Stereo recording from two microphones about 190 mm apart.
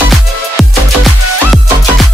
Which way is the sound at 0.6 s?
Centre (ahead or behind).